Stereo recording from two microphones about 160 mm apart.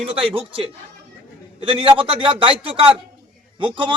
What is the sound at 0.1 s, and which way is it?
A man's voice, 35° right (ahead or behind).